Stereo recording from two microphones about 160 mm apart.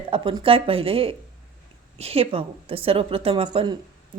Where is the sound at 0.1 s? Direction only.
35° right (ahead or behind).